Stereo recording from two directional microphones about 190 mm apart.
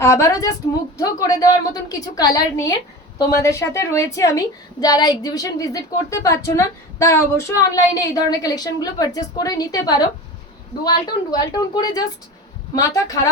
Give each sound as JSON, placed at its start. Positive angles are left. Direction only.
{"t": 0.0, "sound": "a woman's voice", "side_deg": 15}